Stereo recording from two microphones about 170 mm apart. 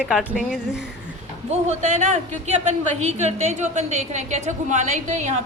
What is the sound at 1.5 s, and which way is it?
A woman's voice, 45° right (ahead or behind).